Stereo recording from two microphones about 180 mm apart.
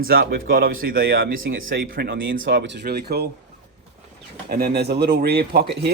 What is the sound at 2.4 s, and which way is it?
Speech, 80° right.